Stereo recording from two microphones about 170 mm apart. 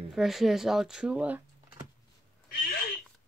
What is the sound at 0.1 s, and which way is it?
Speech, centre (ahead or behind).